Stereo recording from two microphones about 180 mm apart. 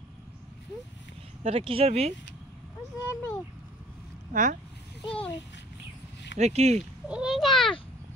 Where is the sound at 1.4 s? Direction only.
30° right (ahead or behind).